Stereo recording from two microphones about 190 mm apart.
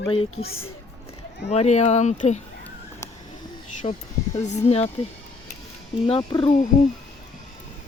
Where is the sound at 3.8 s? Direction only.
30° left (ahead or behind).